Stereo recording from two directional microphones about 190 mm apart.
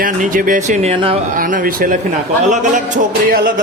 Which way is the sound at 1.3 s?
45° right (ahead or behind).